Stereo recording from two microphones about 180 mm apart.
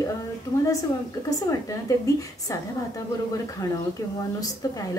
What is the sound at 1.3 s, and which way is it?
A woman's voice, 20° left (ahead or behind).